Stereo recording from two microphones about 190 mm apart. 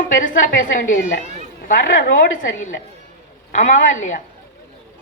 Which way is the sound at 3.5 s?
40° left (ahead or behind).